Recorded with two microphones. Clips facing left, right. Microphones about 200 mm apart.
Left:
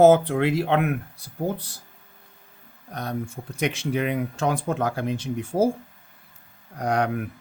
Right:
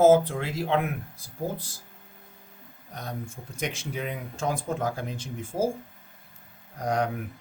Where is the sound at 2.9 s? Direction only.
65° left (ahead or behind).